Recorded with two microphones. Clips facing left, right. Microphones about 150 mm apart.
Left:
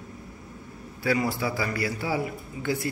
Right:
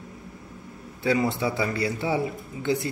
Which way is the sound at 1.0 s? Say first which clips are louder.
Right 2 dB; 20° right (ahead or behind).